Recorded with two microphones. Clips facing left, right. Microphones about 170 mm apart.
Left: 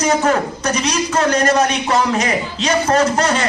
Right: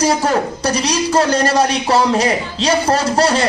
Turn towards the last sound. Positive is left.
turn(degrees=-35)  # may be behind; listen again after turning